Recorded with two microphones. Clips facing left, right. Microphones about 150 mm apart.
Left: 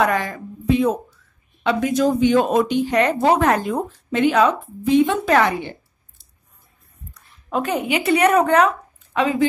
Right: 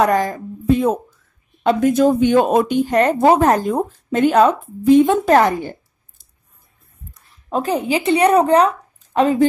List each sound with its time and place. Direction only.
0.0 s a woman's voice: 40° right (ahead or behind)
7.5 s a woman's voice: 35° right (ahead or behind)